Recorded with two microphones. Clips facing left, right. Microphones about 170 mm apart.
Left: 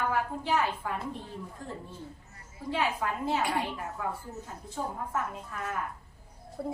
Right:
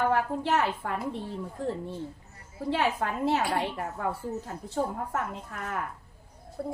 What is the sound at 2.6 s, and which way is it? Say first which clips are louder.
A woman's voice: right 3 dB; 75° right (ahead or behind).